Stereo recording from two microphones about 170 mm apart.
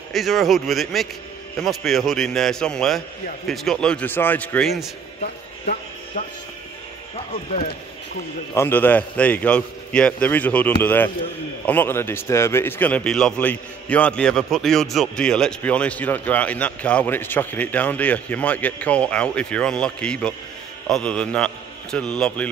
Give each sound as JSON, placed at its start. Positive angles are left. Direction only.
{"t": 0.1, "sound": "a man's voice", "side_deg": 0}
{"t": 5.2, "sound": "a sound", "side_deg": 60}
{"t": 8.5, "sound": "a man's voice", "side_deg": 10}